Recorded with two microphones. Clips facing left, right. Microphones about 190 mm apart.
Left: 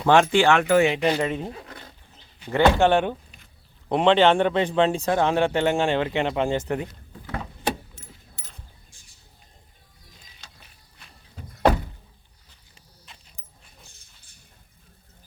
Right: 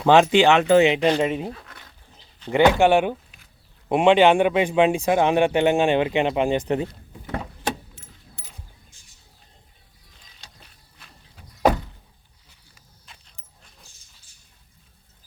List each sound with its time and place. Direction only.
0.1 s speech: 20° right (ahead or behind)
2.5 s speech: 15° right (ahead or behind)
13.1 s a sound: centre (ahead or behind)